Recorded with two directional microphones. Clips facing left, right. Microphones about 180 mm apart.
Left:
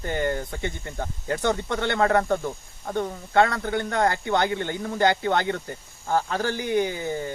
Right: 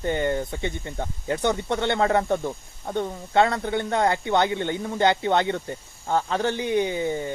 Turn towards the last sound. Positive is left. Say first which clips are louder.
# right 1 dB
turn(degrees=-20)  # may be behind; listen again after turning